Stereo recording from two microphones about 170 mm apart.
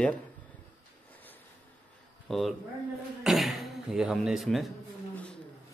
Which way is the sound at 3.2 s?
Centre (ahead or behind).